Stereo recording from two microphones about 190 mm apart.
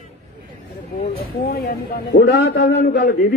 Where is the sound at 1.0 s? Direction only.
55° left (ahead or behind).